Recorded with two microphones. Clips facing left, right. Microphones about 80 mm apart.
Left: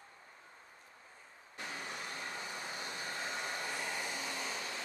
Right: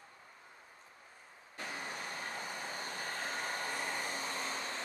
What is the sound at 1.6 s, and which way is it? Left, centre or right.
Vehicle, right.